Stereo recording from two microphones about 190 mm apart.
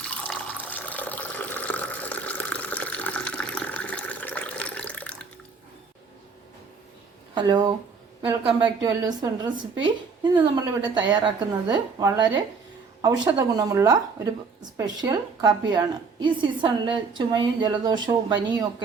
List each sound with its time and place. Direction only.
0.0 s water: 5° left (ahead or behind)
7.3 s a woman's voice: 25° right (ahead or behind)